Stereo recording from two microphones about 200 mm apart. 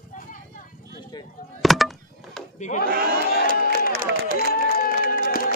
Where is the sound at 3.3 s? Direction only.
45° left (ahead or behind).